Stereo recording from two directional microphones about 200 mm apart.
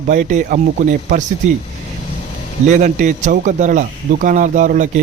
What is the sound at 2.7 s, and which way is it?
Speech, 40° right (ahead or behind).